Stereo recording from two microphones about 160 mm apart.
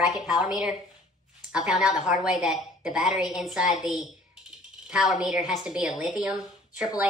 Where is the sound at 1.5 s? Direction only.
5° right (ahead or behind).